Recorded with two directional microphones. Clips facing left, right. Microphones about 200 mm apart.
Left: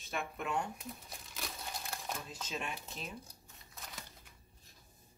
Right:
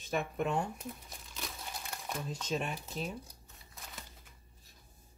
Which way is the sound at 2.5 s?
40° right (ahead or behind).